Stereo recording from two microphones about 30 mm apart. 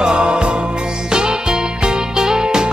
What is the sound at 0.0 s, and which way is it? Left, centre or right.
Music, right.